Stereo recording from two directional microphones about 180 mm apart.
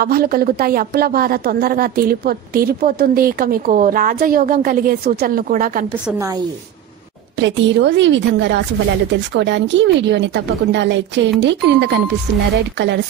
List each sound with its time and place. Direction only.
0.0 s a woman's voice: 55° right (ahead or behind)
6.1 s speech: 15° right (ahead or behind)
7.3 s a woman's voice: 85° right